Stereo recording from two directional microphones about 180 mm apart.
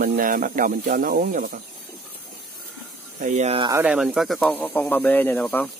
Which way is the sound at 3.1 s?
40° right (ahead or behind).